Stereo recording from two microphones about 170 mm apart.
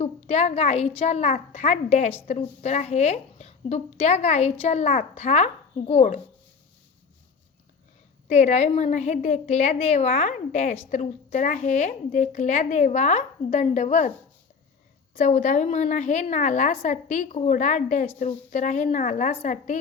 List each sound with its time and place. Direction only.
0.0 s a woman's voice: 40° left (ahead or behind)
8.3 s a woman's voice: 40° left (ahead or behind)
15.1 s a woman's voice: 45° left (ahead or behind)